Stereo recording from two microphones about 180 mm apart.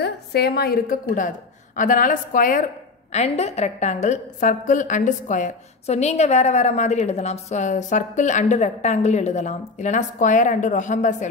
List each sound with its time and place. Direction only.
0.0 s a woman's voice: 65° left (ahead or behind); by 2.6 s 50° left (ahead or behind)
3.1 s a woman's voice: 40° left (ahead or behind)